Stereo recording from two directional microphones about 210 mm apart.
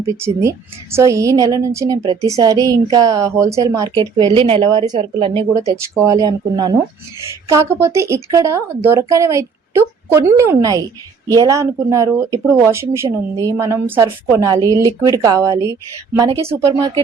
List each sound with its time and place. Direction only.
0.0 s speech: 15° right (ahead or behind)